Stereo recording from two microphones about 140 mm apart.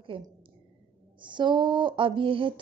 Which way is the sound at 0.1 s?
35° right (ahead or behind).